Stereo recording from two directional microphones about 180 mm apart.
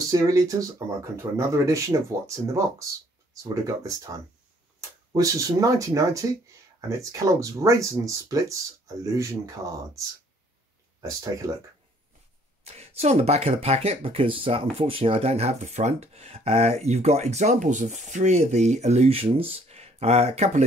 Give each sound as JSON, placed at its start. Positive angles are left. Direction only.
{"t": 0.1, "sound": "speech", "side_deg": -20}
{"t": 12.6, "sound": "speech", "side_deg": -35}